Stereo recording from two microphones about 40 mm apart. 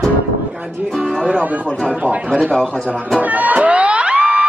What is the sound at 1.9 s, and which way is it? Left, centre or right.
Speech, right.